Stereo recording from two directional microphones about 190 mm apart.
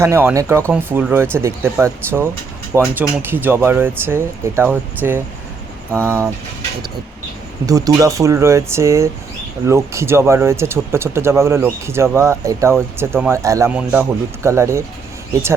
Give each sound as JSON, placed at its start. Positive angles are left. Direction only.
{"t": 0.0, "sound": "speech", "side_deg": -15}
{"t": 7.7, "sound": "speech", "side_deg": -20}